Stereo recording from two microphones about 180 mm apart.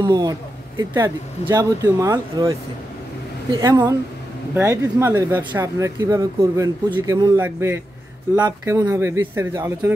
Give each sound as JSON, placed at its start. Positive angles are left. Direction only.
{"t": 0.0, "sound": "speech", "side_deg": -20}
{"t": 3.5, "sound": "speech", "side_deg": -20}